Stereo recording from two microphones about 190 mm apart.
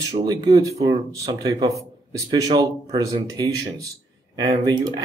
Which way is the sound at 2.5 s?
20° right (ahead or behind).